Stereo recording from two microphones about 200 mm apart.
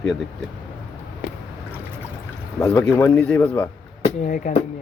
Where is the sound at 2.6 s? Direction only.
10° left (ahead or behind).